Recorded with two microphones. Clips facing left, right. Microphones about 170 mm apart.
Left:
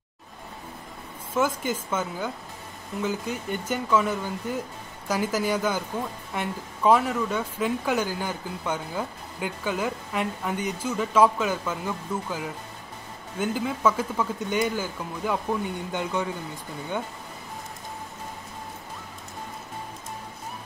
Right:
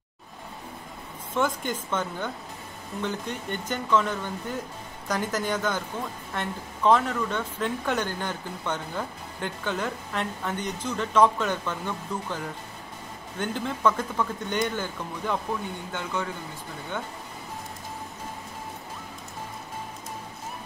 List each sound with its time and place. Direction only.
1.3 s speech: 5° left (ahead or behind)
15.9 s speech: 15° left (ahead or behind)